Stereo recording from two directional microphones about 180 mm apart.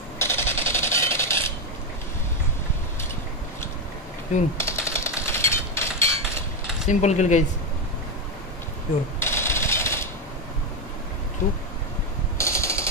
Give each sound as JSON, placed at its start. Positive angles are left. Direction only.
{"t": 0.2, "sound": "rub", "side_deg": 15}
{"t": 4.6, "sound": "typewriter", "side_deg": 15}
{"t": 6.9, "sound": "speech", "side_deg": 40}
{"t": 9.2, "sound": "a sound", "side_deg": 15}
{"t": 12.4, "sound": "mechanisms", "side_deg": 15}